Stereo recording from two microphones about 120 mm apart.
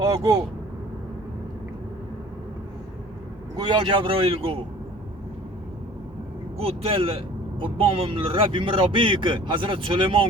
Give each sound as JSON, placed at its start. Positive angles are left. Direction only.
{"t": 0.0, "sound": "speech", "side_deg": -30}
{"t": 3.5, "sound": "a man's voice", "side_deg": -35}
{"t": 6.6, "sound": "a man's voice", "side_deg": -55}